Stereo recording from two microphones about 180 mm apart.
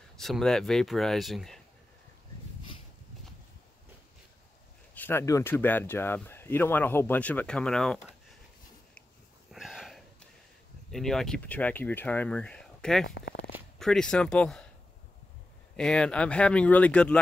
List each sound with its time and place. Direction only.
0.2 s speech: centre (ahead or behind)
4.9 s speech: 10° left (ahead or behind)
9.5 s a sound: centre (ahead or behind)
10.9 s speech: centre (ahead or behind)
13.0 s speech: 65° left (ahead or behind)
13.7 s speech: 5° left (ahead or behind)
15.7 s speech: 5° left (ahead or behind)